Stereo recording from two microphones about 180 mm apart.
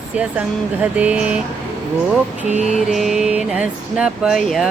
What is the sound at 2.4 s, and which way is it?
Mantra, 40° right (ahead or behind).